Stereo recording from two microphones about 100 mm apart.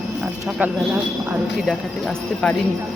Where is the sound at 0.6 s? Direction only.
15° right (ahead or behind).